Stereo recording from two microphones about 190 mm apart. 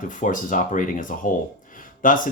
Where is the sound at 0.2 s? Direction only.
45° left (ahead or behind).